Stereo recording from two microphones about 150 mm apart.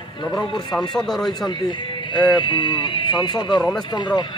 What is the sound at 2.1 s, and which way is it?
A man's voice, 30° left (ahead or behind).